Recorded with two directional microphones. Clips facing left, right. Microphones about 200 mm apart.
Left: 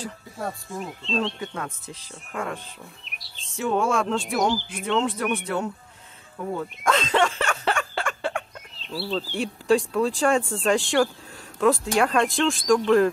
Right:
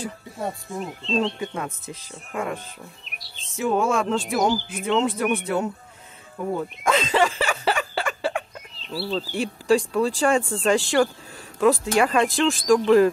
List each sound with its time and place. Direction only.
0.0 s speech: 20° right (ahead or behind)
6.8 s a sound: 5° right (ahead or behind)
11.6 s speech: centre (ahead or behind)